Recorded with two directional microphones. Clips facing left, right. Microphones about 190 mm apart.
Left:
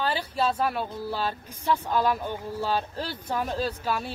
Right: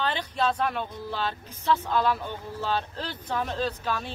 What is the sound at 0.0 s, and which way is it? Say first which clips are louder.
Speech: left 1 dB; 10° left (ahead or behind).